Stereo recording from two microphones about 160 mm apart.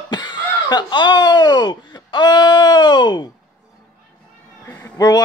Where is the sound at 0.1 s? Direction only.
30° left (ahead or behind).